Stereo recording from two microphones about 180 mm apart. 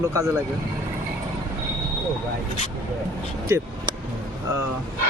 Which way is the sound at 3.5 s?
15° right (ahead or behind).